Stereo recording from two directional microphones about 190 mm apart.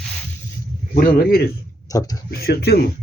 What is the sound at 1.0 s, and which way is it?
Speech, 50° left (ahead or behind).